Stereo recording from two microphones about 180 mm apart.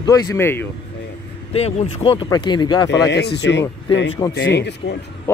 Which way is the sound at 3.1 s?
70° left (ahead or behind).